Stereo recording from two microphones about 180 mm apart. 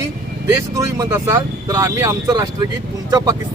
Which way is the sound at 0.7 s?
20° right (ahead or behind).